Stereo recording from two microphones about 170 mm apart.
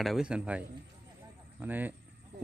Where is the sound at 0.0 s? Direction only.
Centre (ahead or behind).